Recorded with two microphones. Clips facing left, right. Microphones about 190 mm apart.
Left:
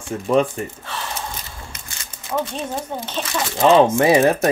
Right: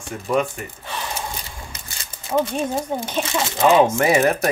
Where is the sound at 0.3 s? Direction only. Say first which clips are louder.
Left 4 dB; 30° left (ahead or behind).